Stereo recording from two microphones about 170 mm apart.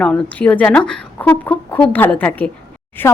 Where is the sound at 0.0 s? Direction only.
10° left (ahead or behind).